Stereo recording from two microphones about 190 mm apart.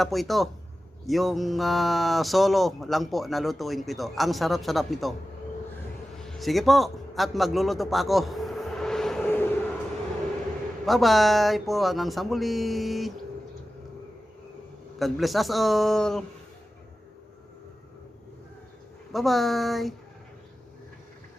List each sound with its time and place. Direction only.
0.0 s speech: centre (ahead or behind)
6.1 s a sound: centre (ahead or behind)
10.8 s speech: centre (ahead or behind)
14.9 s speech: centre (ahead or behind)
19.1 s speech: centre (ahead or behind)